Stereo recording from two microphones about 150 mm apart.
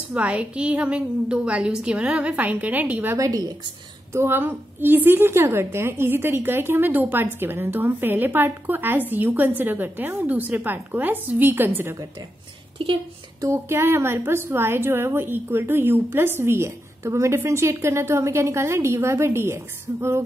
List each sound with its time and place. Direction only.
0.1 s a woman's voice: 10° right (ahead or behind)
12.8 s speech: 35° right (ahead or behind)
13.4 s a woman's voice: 15° right (ahead or behind)